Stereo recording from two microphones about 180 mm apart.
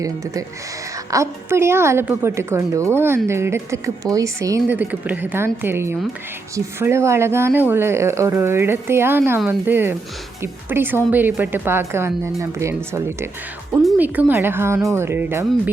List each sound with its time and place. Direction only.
1.1 s speech: 15° right (ahead or behind)